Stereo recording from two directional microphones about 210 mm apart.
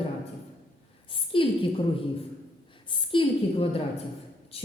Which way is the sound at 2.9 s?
25° left (ahead or behind).